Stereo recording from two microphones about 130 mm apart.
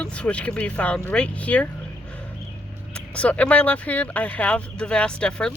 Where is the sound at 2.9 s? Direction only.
10° left (ahead or behind).